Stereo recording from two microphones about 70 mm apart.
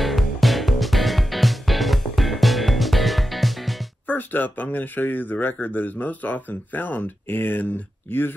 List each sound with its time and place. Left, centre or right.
0.0 s music: centre
4.1 s speech: left